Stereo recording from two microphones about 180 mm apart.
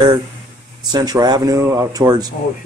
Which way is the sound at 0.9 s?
20° right (ahead or behind).